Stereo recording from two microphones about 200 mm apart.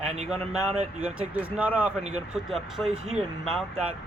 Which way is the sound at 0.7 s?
35° right (ahead or behind).